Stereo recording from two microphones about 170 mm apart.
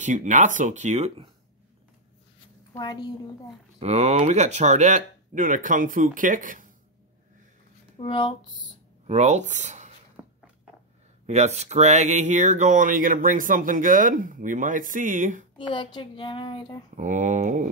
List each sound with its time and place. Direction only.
0.0 s speech: 45° right (ahead or behind)
2.7 s a child's voice: 25° left (ahead or behind)
3.8 s speech: 40° right (ahead or behind)
8.0 s a child's voice: 30° left (ahead or behind)
9.0 s speech: 40° right (ahead or behind)
10.2 s a sound: 15° right (ahead or behind)
11.2 s speech: 40° right (ahead or behind)
15.5 s a child's voice: 25° left (ahead or behind)
16.9 s speech: 45° right (ahead or behind)